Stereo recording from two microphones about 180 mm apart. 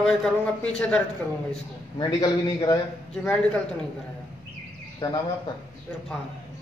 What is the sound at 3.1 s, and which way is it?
Speech, 5° left (ahead or behind).